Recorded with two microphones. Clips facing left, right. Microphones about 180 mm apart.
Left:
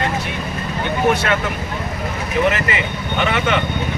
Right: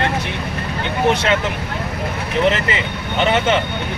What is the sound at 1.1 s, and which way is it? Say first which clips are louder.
Speech: right 1 dB; 20° right (ahead or behind).